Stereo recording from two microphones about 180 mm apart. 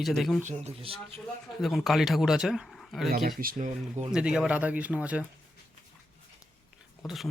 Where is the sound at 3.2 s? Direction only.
55° right (ahead or behind).